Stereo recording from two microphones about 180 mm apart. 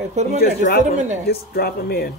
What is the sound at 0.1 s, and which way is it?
Speech, 40° right (ahead or behind).